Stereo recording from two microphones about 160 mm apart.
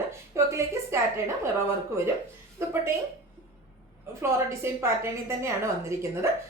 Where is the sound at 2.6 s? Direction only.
15° right (ahead or behind).